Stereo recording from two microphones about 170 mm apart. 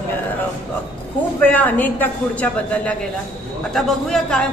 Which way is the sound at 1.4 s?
10° left (ahead or behind).